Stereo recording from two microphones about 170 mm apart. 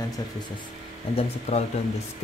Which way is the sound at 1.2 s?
40° left (ahead or behind).